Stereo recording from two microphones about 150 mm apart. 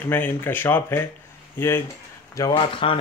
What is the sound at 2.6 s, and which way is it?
Speech, 35° left (ahead or behind).